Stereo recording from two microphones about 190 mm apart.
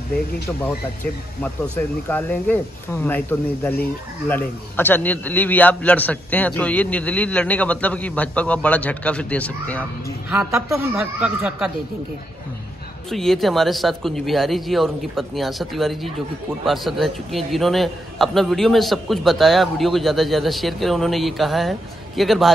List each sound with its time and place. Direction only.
2.0 s a man's voice: 10° left (ahead or behind)
10.5 s speech: 15° right (ahead or behind)
13.1 s a man's voice: centre (ahead or behind)